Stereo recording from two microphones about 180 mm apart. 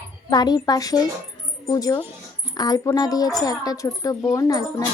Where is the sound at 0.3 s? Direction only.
20° left (ahead or behind).